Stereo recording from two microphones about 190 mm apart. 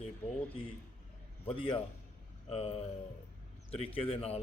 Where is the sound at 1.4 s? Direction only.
30° left (ahead or behind).